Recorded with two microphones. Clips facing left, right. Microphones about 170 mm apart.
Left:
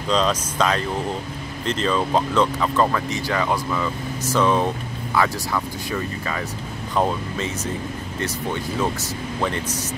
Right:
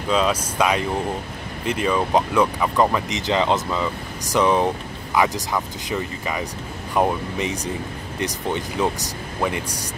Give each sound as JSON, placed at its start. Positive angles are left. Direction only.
{"t": 0.1, "sound": "speech", "side_deg": -10}